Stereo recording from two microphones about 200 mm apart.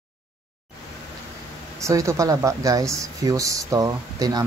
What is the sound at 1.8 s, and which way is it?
Speech, 15° right (ahead or behind).